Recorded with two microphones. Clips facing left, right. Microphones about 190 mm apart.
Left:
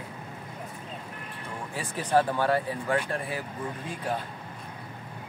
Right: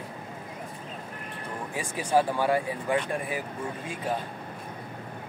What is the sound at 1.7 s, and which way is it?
Speech, 15° right (ahead or behind).